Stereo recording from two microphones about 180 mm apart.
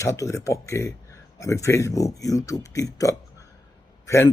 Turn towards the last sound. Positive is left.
turn(degrees=15)  # may be behind; listen again after turning